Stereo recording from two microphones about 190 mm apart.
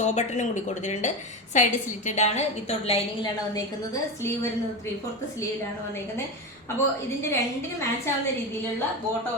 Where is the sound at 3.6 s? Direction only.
20° left (ahead or behind).